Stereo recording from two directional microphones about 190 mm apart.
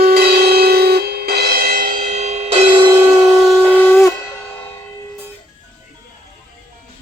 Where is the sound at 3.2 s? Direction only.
5° right (ahead or behind).